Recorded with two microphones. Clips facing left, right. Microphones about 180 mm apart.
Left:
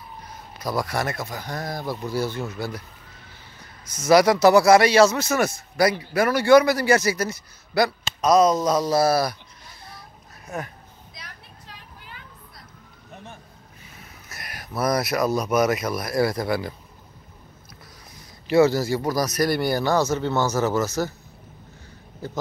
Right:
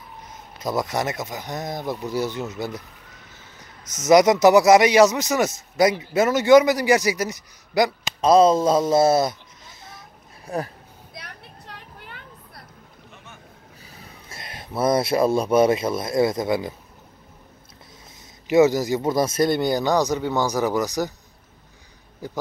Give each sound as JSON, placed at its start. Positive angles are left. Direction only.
{"t": 0.2, "sound": "speech", "side_deg": -20}
{"t": 3.9, "sound": "speech", "side_deg": -20}
{"t": 8.2, "sound": "speech", "side_deg": -30}
{"t": 9.8, "sound": "a sound", "side_deg": -20}
{"t": 11.1, "sound": "vehicle", "side_deg": -60}
{"t": 13.1, "sound": "vehicle", "side_deg": 35}
{"t": 13.8, "sound": "speech", "side_deg": -35}
{"t": 18.5, "sound": "speech", "side_deg": -15}
{"t": 22.2, "sound": "speech", "side_deg": -15}